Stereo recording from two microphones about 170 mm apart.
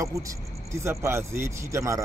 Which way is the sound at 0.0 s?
20° right (ahead or behind).